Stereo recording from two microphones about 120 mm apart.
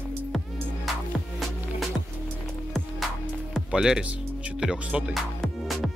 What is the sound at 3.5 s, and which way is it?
Music, 5° right (ahead or behind).